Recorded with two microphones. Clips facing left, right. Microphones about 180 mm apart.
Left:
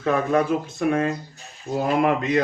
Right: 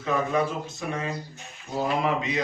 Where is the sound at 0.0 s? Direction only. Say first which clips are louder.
Left 4 dB; 60° left (ahead or behind).